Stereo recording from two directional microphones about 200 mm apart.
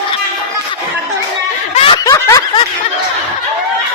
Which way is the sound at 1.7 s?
25° left (ahead or behind).